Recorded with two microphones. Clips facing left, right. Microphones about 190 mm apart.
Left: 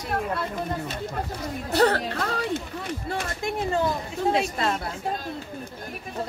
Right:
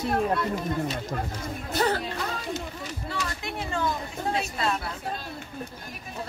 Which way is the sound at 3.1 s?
50° left (ahead or behind).